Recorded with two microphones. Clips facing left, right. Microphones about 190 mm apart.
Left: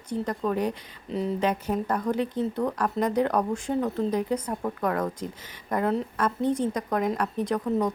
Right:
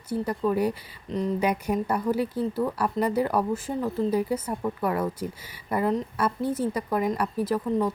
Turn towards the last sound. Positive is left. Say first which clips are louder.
# even
turn(degrees=-5)  # may be behind; listen again after turning